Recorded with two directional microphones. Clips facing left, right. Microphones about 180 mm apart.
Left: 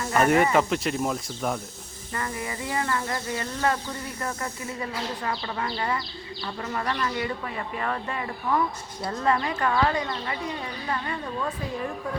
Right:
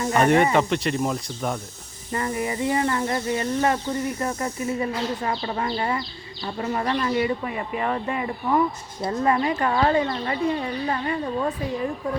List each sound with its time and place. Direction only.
0.0 s speech: 25° right (ahead or behind)
0.5 s speech: centre (ahead or behind)
2.1 s speech: 25° right (ahead or behind)